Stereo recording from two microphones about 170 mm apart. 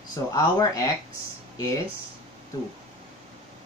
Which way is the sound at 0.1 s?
20° left (ahead or behind).